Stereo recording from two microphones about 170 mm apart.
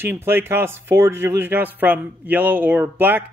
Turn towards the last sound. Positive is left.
turn(degrees=-10)  # may be behind; listen again after turning